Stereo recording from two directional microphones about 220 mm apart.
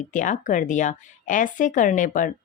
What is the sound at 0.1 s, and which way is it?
A woman's voice, 35° left (ahead or behind).